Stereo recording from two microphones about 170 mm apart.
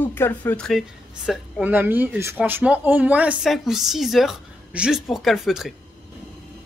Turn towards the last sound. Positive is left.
turn(degrees=0)  # may be behind; listen again after turning